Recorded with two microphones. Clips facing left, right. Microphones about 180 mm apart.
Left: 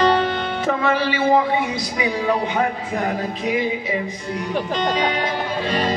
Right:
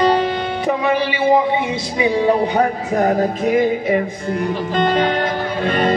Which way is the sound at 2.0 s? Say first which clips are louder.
Right 6 dB; 30° right (ahead or behind).